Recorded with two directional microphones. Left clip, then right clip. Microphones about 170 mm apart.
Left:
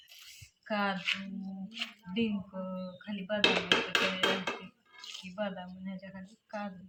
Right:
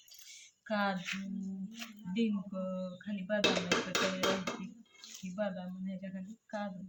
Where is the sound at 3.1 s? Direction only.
25° right (ahead or behind).